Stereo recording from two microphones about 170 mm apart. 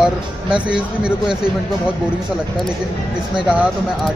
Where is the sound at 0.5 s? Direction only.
5° right (ahead or behind).